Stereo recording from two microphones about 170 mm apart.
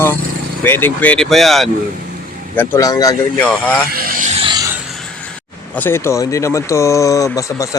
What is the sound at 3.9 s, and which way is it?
Speech, 55° right (ahead or behind).